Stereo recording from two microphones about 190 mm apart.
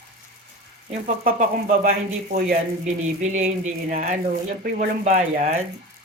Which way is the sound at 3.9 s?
45° right (ahead or behind).